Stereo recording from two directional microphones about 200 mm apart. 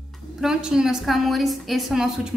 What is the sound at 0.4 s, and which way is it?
A woman's voice, 5° right (ahead or behind).